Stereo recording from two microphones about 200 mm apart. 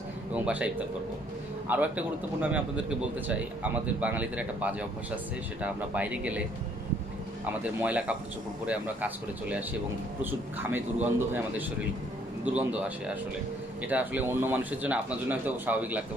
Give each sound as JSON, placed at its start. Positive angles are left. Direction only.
{"t": 0.3, "sound": "a man's voice", "side_deg": -5}
{"t": 7.4, "sound": "speech", "side_deg": -5}